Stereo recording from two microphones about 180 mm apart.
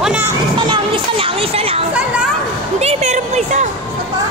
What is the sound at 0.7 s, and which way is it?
Music, 30° right (ahead or behind).